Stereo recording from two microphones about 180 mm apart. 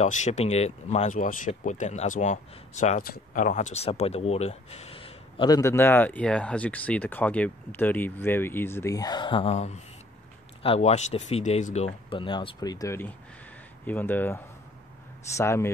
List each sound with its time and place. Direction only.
0.0 s speech: 40° left (ahead or behind); by 15.7 s 15° left (ahead or behind)